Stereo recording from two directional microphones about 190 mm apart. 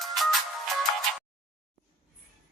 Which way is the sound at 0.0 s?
Centre (ahead or behind).